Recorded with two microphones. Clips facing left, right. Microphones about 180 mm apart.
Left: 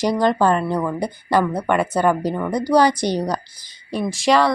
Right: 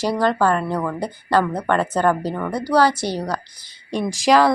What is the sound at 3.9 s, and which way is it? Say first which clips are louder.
Speech: right 1 dB; 5° left (ahead or behind).